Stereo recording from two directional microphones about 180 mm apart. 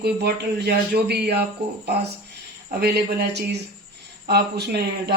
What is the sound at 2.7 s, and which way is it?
A man's voice, 65° right (ahead or behind).